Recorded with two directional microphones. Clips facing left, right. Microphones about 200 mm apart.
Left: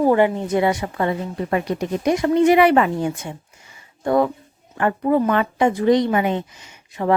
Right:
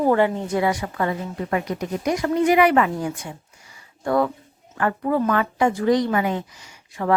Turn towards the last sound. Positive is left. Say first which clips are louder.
# left 2 dB
turn(degrees=20)  # may be behind; listen again after turning